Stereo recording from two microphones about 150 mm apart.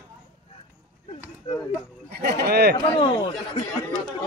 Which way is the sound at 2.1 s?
90° right.